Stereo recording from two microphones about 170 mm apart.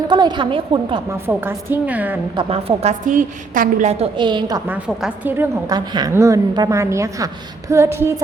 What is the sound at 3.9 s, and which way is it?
Speech, 30° right (ahead or behind).